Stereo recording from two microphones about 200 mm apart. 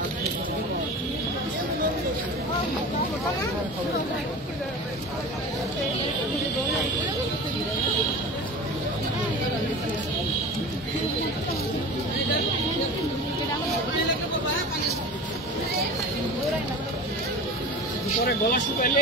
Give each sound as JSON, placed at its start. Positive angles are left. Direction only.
{"t": 18.2, "sound": "speech", "side_deg": 50}